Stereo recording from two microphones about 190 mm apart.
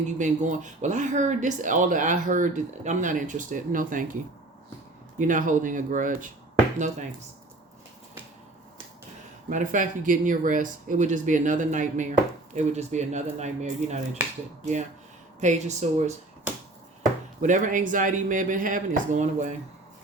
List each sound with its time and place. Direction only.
0.0 s speech: 40° right (ahead or behind)
5.2 s speech: 45° right (ahead or behind)
9.5 s speech: 40° right (ahead or behind)
17.4 s speech: 40° right (ahead or behind)